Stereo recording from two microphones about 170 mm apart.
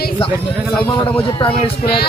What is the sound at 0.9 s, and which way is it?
Speech, 30° left (ahead or behind).